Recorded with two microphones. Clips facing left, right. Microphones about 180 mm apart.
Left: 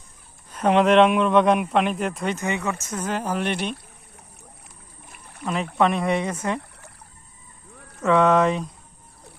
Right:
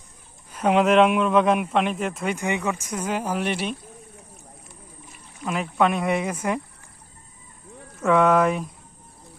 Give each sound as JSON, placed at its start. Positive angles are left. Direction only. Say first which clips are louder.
{"t": 0.5, "sound": "speech", "louder": "left 1 dB", "side_deg": -10}
{"t": 2.3, "sound": "speech", "louder": "right 1 dB", "side_deg": -15}
{"t": 5.1, "sound": "rowboat", "louder": "left 2 dB", "side_deg": 60}
{"t": 5.7, "sound": "speech", "louder": "even", "side_deg": 0}
{"t": 8.0, "sound": "speech", "louder": "even", "side_deg": 0}